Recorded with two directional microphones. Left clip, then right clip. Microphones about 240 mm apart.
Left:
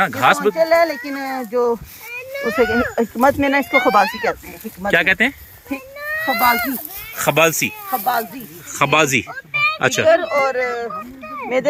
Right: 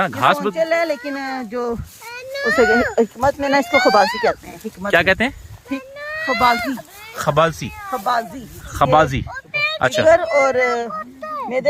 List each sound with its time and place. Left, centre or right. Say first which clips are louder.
0.0 s speech: left 2 dB; centre
2.6 s speech: right 2 dB; centre
2.9 s speech: left 1 dB; right
3.7 s speech: right 2 dB; right
4.1 s speech: right 3 dB; centre
7.2 s speech: left 2 dB; right
7.9 s speech: right 3 dB; right
9.0 s speech: left 7 dB; centre
10.1 s speech: right 2 dB; right
11.3 s a sound: left 1 dB; right